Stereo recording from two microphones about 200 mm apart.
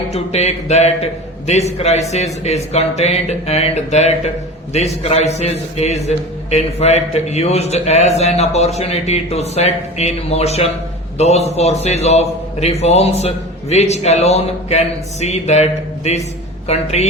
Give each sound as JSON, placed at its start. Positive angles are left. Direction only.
{"t": 0.1, "sound": "a man's voice", "side_deg": 30}